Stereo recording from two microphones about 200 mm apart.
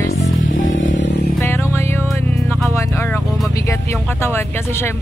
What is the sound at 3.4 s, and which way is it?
Speech, 15° left (ahead or behind).